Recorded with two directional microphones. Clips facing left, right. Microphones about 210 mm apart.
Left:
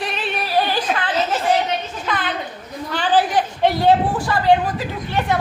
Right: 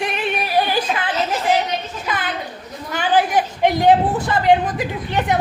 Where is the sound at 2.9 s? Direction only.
10° right (ahead or behind).